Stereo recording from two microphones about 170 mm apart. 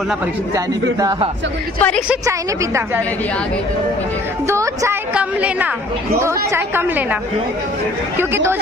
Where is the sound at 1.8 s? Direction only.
5° left (ahead or behind).